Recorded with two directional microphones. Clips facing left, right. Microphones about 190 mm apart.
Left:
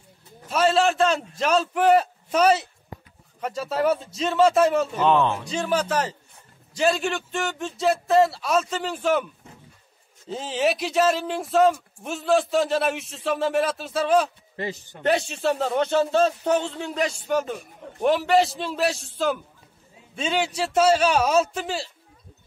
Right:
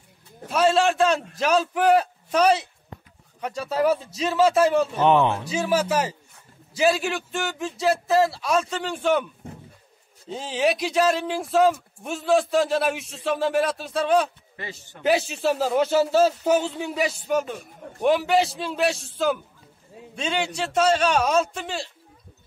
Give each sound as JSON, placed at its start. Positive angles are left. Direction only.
{"t": 0.5, "sound": "speech", "side_deg": 0}
{"t": 5.0, "sound": "speech", "side_deg": -15}